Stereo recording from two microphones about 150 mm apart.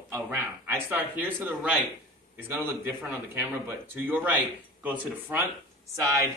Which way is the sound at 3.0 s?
10° right (ahead or behind).